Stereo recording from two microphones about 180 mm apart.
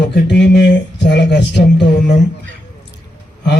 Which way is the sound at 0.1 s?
70° left (ahead or behind).